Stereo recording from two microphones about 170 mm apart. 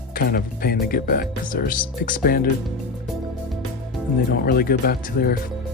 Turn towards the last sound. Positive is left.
turn(degrees=60)  # may be behind; listen again after turning